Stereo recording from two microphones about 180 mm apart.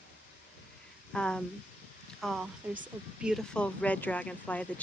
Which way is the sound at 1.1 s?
5° left (ahead or behind).